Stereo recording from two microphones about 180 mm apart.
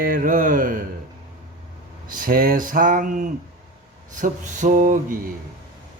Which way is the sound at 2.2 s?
50° right (ahead or behind).